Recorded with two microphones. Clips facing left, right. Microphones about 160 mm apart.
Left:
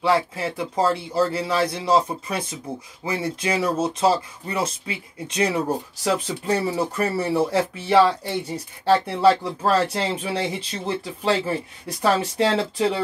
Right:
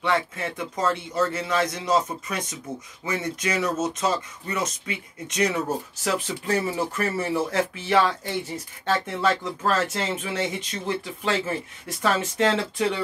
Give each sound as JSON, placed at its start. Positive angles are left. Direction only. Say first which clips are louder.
{"t": 0.0, "sound": "speech", "louder": "left 4 dB", "side_deg": 30}